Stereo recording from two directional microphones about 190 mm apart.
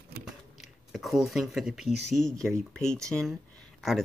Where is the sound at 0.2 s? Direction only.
Centre (ahead or behind).